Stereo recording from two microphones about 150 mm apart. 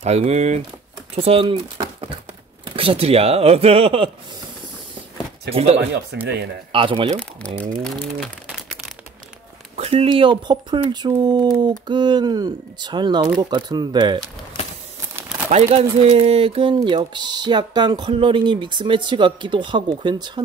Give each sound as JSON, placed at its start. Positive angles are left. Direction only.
{"t": 0.0, "sound": "speech", "side_deg": -45}
{"t": 2.6, "sound": "speech", "side_deg": -35}
{"t": 5.5, "sound": "speech", "side_deg": -45}
{"t": 7.5, "sound": "speech", "side_deg": -60}
{"t": 7.8, "sound": "speech", "side_deg": 5}
{"t": 9.8, "sound": "speech", "side_deg": -40}
{"t": 15.5, "sound": "speech", "side_deg": -45}